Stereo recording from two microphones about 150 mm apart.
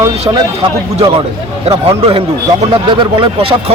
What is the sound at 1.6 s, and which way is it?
Speech, 40° right (ahead or behind).